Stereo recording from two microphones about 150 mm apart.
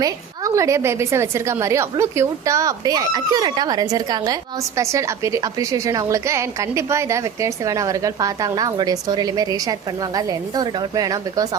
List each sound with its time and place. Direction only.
0.0 s a woman's voice: 20° right (ahead or behind)